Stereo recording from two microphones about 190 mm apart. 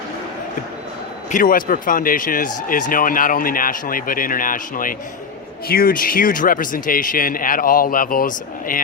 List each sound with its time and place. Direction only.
1.3 s speech: 45° left (ahead or behind)